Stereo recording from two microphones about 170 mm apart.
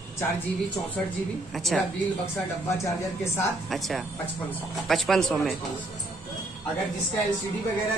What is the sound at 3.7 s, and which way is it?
A woman's voice, centre (ahead or behind).